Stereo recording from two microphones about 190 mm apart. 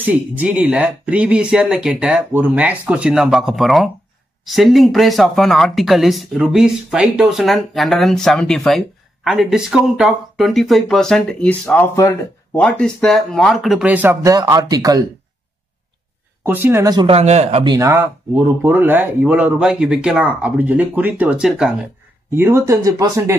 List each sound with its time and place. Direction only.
0.0 s speech: 10° right (ahead or behind)
16.4 s speech: 10° right (ahead or behind); by 17.7 s 30° right (ahead or behind)
17.7 s speech: 15° right (ahead or behind)